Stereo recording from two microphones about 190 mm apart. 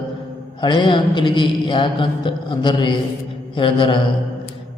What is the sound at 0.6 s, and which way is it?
Mantra, 25° left (ahead or behind).